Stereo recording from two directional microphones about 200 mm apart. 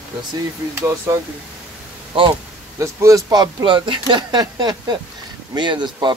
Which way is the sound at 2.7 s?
15° right (ahead or behind).